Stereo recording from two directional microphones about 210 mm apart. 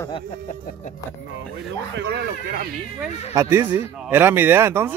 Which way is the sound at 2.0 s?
50° right (ahead or behind).